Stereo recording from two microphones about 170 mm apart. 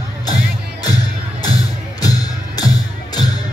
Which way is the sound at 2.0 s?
20° left (ahead or behind).